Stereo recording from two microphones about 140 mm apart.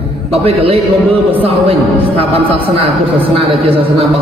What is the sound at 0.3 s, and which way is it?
A man's voice, 45° right (ahead or behind).